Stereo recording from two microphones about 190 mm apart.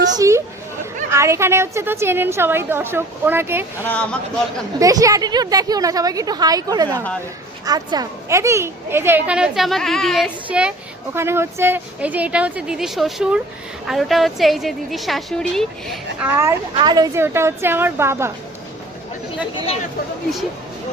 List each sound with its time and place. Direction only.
0.2 s a woman's voice: 15° right (ahead or behind)
3.8 s a woman's voice: 5° left (ahead or behind)
4.8 s a woman's voice: 15° right (ahead or behind); by 16.0 s centre (ahead or behind)
16.2 s a woman's voice: 15° right (ahead or behind)